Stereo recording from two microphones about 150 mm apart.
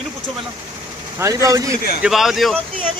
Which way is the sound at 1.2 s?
20° right (ahead or behind).